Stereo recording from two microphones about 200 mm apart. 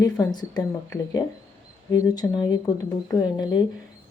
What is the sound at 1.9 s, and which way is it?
Speech, 20° left (ahead or behind).